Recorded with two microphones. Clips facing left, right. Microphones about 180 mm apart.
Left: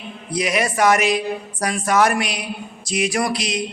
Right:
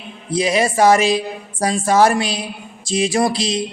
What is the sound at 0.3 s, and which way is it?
A woman's voice, 30° right (ahead or behind).